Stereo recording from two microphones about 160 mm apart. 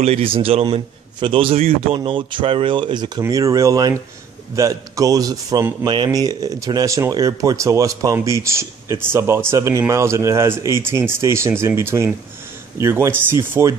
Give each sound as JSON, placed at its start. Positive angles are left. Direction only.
{"t": 0.0, "sound": "a man's voice", "side_deg": -35}